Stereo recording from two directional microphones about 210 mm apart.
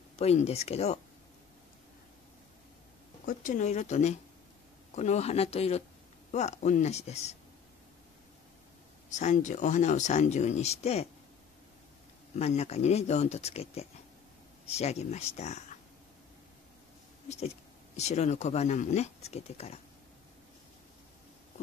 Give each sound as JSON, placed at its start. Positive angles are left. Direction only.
{"t": 0.2, "sound": "speech", "side_deg": 30}
{"t": 3.3, "sound": "speech", "side_deg": 35}
{"t": 9.1, "sound": "speech", "side_deg": 35}
{"t": 12.4, "sound": "speech", "side_deg": 30}
{"t": 17.9, "sound": "speech", "side_deg": 30}